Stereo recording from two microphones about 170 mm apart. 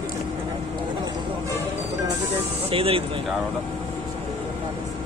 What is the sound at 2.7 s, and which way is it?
Speech, 35° right (ahead or behind).